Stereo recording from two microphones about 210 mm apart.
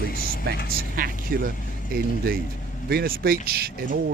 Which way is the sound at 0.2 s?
45° left (ahead or behind).